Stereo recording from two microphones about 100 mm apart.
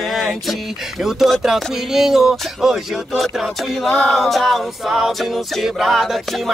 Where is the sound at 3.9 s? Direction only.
10° left (ahead or behind).